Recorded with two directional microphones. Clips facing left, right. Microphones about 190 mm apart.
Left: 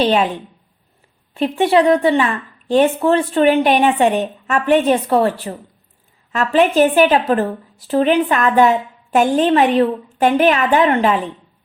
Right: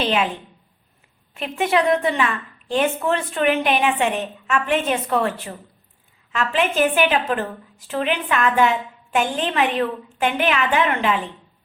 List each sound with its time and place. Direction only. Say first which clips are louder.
0.0 s speech: left 6 dB; 35° left (ahead or behind)
1.3 s speech: left 6 dB; 35° left (ahead or behind)